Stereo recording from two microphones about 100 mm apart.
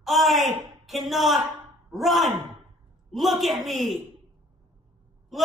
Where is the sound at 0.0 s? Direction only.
Centre (ahead or behind).